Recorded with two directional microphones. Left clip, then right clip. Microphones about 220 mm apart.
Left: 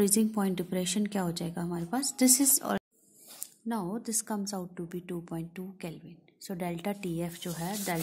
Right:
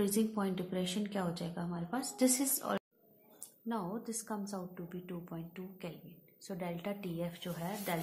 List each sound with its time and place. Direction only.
0.0 s a woman's voice: 45° left (ahead or behind)